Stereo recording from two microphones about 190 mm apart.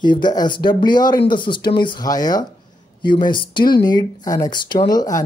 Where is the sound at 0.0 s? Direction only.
25° left (ahead or behind).